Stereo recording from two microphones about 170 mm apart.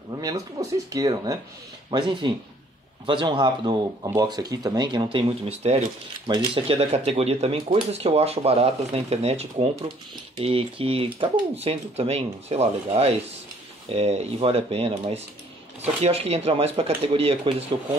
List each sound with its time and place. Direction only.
0.2 s speech: 20° right (ahead or behind)